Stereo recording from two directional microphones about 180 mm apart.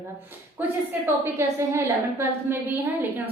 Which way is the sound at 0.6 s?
10° right (ahead or behind).